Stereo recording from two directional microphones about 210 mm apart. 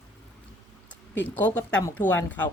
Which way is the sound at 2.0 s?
5° left (ahead or behind).